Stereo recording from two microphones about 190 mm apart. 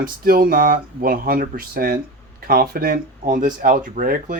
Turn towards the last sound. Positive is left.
turn(degrees=-45)  # may be behind; listen again after turning